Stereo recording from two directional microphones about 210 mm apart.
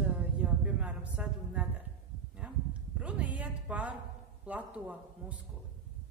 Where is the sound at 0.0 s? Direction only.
5° right (ahead or behind).